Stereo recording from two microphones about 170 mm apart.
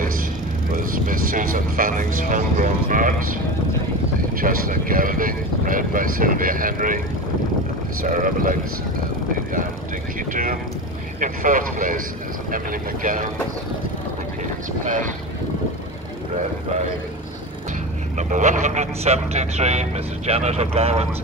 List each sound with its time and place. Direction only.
1.0 s speech: 55° right (ahead or behind)
4.4 s speech: 55° right (ahead or behind)
8.0 s speech: 50° right (ahead or behind)
10.3 s speech: 55° right (ahead or behind)
14.9 s speech: 50° right (ahead or behind)
18.1 s speech: 45° right (ahead or behind)